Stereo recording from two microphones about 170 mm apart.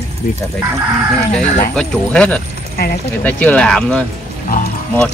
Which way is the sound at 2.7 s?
60° left (ahead or behind).